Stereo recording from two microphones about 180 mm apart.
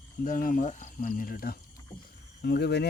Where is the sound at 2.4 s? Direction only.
65° left (ahead or behind).